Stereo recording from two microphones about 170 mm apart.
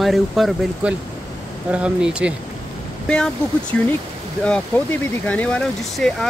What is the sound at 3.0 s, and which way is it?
Speech, 5° left (ahead or behind).